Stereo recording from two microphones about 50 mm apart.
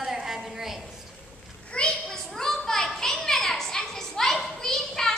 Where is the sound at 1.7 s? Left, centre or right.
Centre.